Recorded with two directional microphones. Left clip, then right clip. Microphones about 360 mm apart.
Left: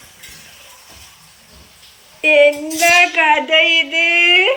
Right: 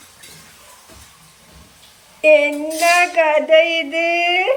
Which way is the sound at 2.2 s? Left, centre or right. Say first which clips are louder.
Left 1 dB; centre.